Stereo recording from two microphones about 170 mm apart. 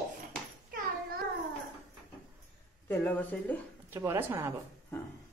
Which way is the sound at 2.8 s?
10° left (ahead or behind).